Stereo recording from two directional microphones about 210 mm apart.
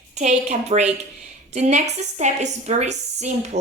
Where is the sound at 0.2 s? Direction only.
35° right (ahead or behind).